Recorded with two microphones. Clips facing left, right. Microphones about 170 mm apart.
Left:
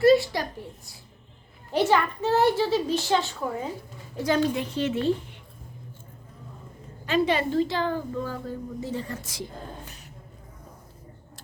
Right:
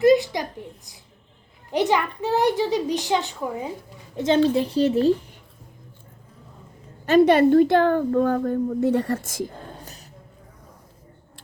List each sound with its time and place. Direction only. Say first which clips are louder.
0.0 s a sound: right 2 dB; 15° right (ahead or behind)
1.7 s a child's voice: right 1 dB; 15° right (ahead or behind)
4.4 s speech: right 7 dB; 35° right (ahead or behind)
7.0 s a woman's voice: right 9 dB; 55° right (ahead or behind)